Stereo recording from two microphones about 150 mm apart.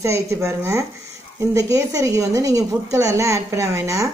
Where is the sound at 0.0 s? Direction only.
20° right (ahead or behind).